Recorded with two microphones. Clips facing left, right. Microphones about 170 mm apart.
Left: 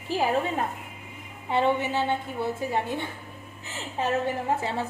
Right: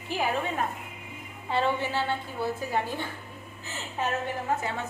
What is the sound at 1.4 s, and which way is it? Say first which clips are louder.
A woman's voice: left 3 dB; 20° left (ahead or behind).